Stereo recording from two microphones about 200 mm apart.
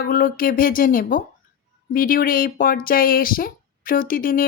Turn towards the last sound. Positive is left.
turn(degrees=45)  # may be behind; listen again after turning